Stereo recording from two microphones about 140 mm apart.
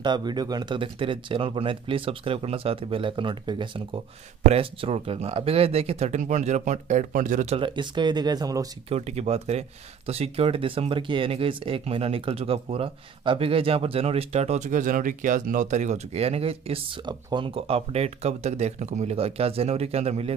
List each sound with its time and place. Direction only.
0.0 s speech: 30° right (ahead or behind); by 7.5 s 65° right (ahead or behind)
7.5 s speech: 35° right (ahead or behind)
8.8 s speech: 50° right (ahead or behind)